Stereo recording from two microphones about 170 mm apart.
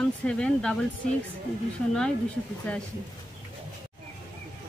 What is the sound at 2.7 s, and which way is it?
Speech, 5° left (ahead or behind).